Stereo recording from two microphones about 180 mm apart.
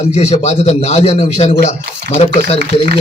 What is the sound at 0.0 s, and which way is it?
A man's voice, 35° left (ahead or behind).